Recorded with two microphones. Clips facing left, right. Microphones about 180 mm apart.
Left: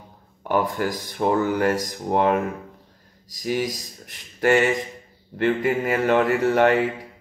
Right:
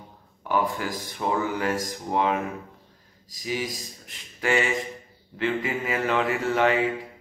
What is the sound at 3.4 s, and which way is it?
Speech, 55° left (ahead or behind).